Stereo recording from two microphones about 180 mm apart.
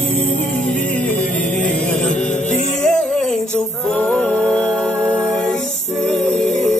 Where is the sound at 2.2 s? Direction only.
45° left (ahead or behind).